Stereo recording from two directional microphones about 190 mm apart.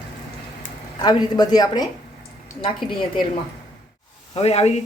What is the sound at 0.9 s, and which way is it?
Speech, 20° left (ahead or behind).